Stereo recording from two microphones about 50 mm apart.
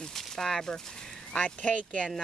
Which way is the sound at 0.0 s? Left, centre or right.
Centre.